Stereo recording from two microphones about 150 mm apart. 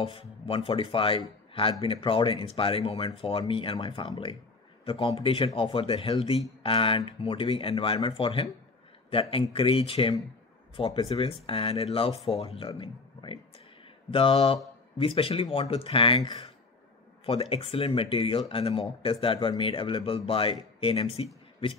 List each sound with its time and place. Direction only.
0.0 s speech: 40° left (ahead or behind)
5.6 s speech: 40° left (ahead or behind)